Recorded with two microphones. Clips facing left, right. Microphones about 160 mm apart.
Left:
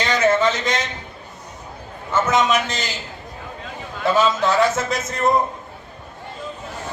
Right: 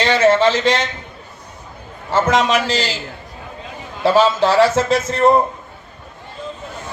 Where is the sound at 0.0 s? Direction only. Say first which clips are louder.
Right 4 dB; 30° right (ahead or behind).